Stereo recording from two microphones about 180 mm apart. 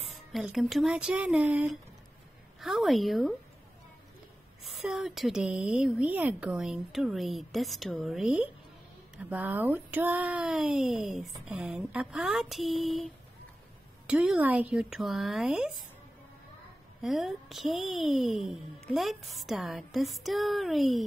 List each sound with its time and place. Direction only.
0.1 s speech: centre (ahead or behind)
4.6 s speech: centre (ahead or behind)
17.0 s speech: centre (ahead or behind)